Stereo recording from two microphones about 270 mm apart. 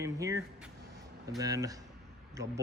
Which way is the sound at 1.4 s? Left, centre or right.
Centre.